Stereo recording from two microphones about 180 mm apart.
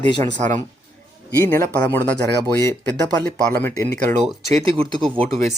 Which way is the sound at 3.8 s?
40° right (ahead or behind).